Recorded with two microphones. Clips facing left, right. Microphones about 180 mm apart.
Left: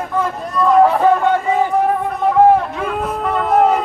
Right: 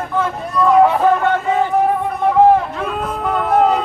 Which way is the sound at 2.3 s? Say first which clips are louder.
Even; centre (ahead or behind).